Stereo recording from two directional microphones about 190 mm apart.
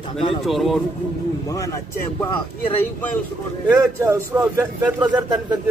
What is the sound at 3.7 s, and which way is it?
A man's voice, 15° right (ahead or behind).